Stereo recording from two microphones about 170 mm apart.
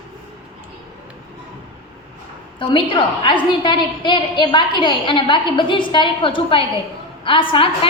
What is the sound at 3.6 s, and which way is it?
A woman's voice, 30° left (ahead or behind).